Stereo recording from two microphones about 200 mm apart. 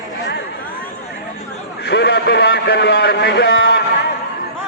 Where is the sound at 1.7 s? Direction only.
55° left (ahead or behind).